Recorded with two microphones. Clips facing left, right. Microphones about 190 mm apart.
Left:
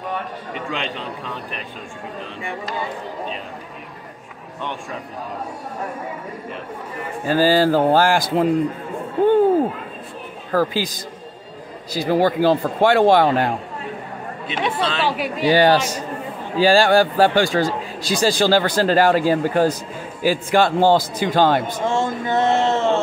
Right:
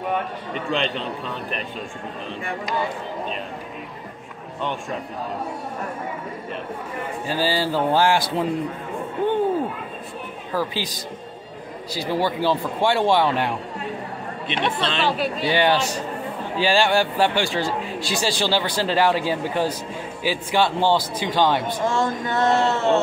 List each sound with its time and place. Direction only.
0.7 s speech: 10° left (ahead or behind)
7.2 s speech: 50° left (ahead or behind)
10.5 s speech: 45° left (ahead or behind)
11.9 s speech: 45° left (ahead or behind)
14.5 s speech: 10° left (ahead or behind)
15.4 s a man's voice: 40° left (ahead or behind)
21.8 s a sound: 25° left (ahead or behind)